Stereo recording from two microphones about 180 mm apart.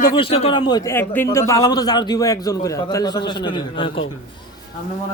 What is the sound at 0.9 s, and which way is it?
A man's voice, 15° left (ahead or behind).